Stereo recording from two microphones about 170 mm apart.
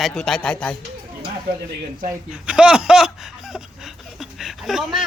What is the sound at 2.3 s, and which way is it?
Speech, 5° right (ahead or behind).